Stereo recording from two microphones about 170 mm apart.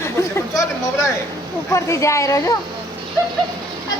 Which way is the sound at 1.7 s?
15° left (ahead or behind).